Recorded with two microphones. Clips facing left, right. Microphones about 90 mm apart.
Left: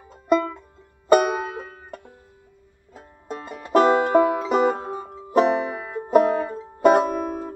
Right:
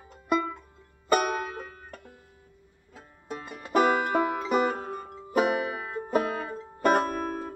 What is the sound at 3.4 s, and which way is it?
Music, centre (ahead or behind).